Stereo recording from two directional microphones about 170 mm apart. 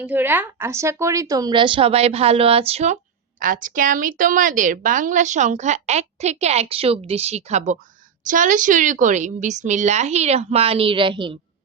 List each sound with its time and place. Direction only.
0.0 s a woman's voice: 10° right (ahead or behind); by 3.0 s 40° right (ahead or behind)
3.4 s a woman's voice: 50° right (ahead or behind); by 11.3 s 30° right (ahead or behind)